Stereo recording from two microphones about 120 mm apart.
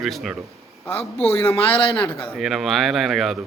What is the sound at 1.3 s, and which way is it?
Speech, 20° left (ahead or behind).